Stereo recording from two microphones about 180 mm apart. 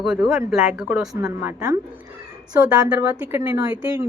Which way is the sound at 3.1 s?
15° right (ahead or behind).